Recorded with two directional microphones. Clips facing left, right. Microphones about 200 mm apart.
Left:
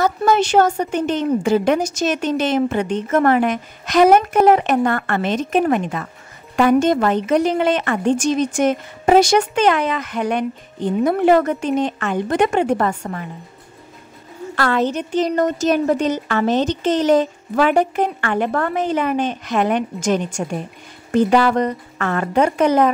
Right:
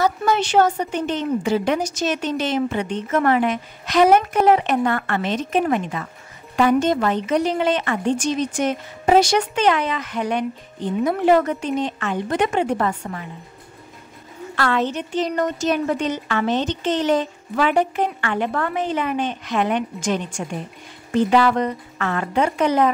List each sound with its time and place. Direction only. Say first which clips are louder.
0.0 s speech: left 3 dB; 45° left (ahead or behind)
14.5 s speech: left 3 dB; 40° left (ahead or behind)